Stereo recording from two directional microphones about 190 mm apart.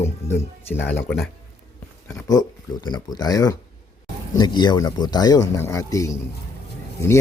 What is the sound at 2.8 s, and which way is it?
Speech, 20° left (ahead or behind).